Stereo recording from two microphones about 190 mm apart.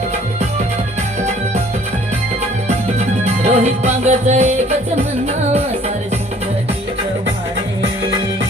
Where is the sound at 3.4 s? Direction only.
35° right (ahead or behind).